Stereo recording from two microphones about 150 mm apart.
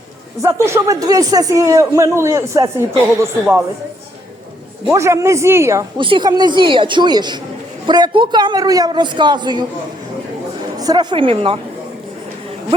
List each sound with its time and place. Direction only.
0.4 s a man's voice: 20° right (ahead or behind)
4.9 s a man's voice: 20° right (ahead or behind)
6.0 s a man's voice: 35° right (ahead or behind)
10.8 s speech: 25° right (ahead or behind)